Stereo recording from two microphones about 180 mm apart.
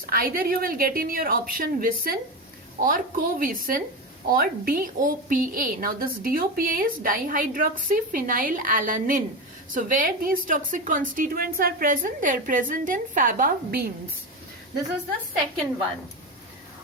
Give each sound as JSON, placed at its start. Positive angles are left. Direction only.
{"t": 0.0, "sound": "a woman's voice", "side_deg": -55}